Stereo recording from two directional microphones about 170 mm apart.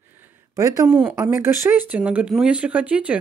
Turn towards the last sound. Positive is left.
turn(degrees=-10)  # may be behind; listen again after turning